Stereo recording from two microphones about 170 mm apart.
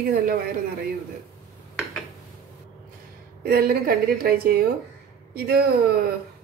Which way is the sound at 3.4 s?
65° right (ahead or behind).